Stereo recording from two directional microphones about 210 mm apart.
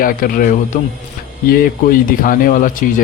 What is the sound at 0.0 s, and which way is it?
Speech, 40° left (ahead or behind).